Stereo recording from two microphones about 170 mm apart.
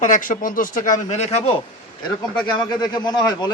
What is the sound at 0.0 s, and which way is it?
Speech, 50° left (ahead or behind).